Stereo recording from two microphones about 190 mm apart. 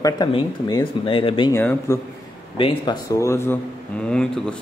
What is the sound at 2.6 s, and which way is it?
Speech, 30° left (ahead or behind).